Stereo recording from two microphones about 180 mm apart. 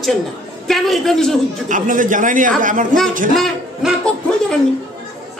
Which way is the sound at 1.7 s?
45° right (ahead or behind).